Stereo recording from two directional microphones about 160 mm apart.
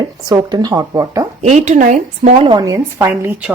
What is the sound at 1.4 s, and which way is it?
Speech, 45° right (ahead or behind).